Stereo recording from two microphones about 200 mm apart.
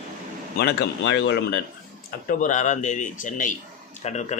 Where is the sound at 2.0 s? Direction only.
45° left (ahead or behind).